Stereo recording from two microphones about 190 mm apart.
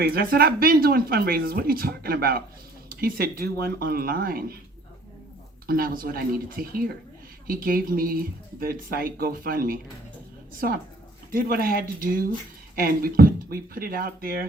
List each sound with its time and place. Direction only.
0.0 s speech: 50° right (ahead or behind)
5.6 s speech: 50° right (ahead or behind)
11.3 s speech: 50° right (ahead or behind)